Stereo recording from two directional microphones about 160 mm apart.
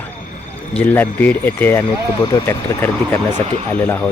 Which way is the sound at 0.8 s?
10° left (ahead or behind).